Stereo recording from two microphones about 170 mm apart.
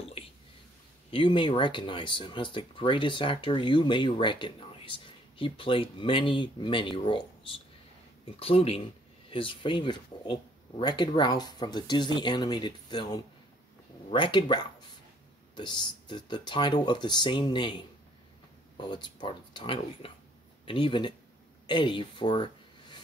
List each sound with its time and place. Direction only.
0.2 s whispering: 35° left (ahead or behind)
1.1 s speech: 30° left (ahead or behind)